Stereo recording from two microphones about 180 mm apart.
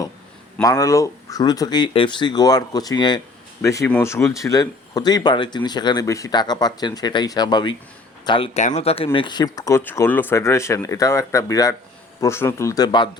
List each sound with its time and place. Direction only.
0.5 s speech: 20° left (ahead or behind)
8.5 s speech: 40° left (ahead or behind)